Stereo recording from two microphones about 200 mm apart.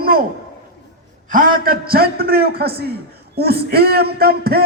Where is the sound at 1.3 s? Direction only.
45° right (ahead or behind).